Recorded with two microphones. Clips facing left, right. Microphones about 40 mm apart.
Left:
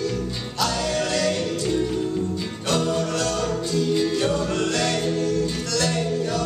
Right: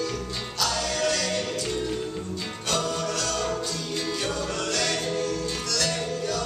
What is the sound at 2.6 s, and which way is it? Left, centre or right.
Music, centre.